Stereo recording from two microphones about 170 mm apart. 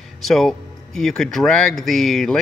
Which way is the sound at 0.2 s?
Centre (ahead or behind).